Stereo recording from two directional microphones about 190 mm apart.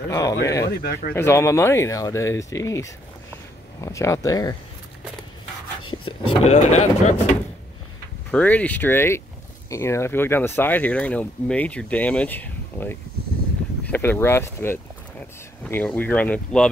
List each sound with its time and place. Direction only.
0.1 s speech: 15° left (ahead or behind)
0.7 s speech: 55° left (ahead or behind)
1.1 s speech: 15° left (ahead or behind)
5.9 s speech: 30° left (ahead or behind)
8.3 s speech: 5° left (ahead or behind)